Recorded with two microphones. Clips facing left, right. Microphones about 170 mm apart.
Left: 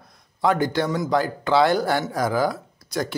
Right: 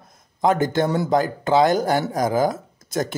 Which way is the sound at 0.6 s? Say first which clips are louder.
Right 2 dB; 45° right (ahead or behind).